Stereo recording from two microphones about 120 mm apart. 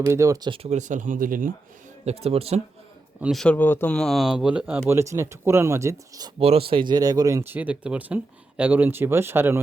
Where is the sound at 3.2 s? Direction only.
Centre (ahead or behind).